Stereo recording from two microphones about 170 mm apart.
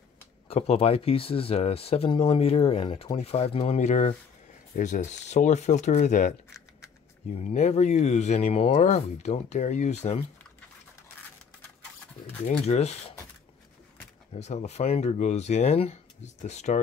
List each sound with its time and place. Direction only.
0.5 s speech: 35° left (ahead or behind)
7.3 s speech: 45° left (ahead or behind)
12.6 s speech: 40° left (ahead or behind)
14.4 s speech: 45° left (ahead or behind)